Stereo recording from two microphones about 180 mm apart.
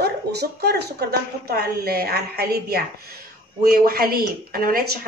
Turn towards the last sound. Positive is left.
turn(degrees=-55)  # may be behind; listen again after turning